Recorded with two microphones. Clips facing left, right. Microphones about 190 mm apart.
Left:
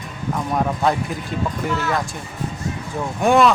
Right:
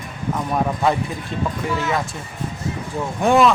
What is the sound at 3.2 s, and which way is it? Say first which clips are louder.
Speech: even; centre (ahead or behind).